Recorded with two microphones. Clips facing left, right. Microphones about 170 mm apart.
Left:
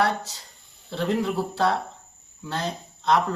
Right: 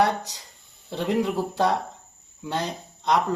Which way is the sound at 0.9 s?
15° right (ahead or behind).